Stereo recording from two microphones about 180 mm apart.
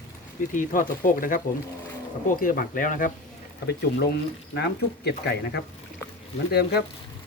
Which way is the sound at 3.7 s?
65° left (ahead or behind).